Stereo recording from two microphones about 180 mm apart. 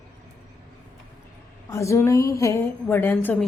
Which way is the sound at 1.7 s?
15° left (ahead or behind).